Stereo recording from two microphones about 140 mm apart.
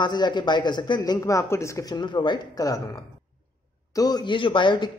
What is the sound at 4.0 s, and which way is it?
Speech, 30° left (ahead or behind).